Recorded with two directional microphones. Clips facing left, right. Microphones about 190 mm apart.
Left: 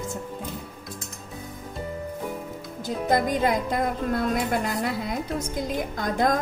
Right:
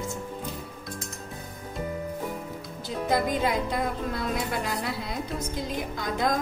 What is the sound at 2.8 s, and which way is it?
Speech, 45° left (ahead or behind).